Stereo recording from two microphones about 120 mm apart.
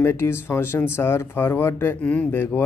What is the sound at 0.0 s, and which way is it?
Speech, 20° left (ahead or behind).